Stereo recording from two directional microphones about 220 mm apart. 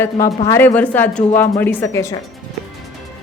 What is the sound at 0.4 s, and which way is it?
Speech, 10° left (ahead or behind).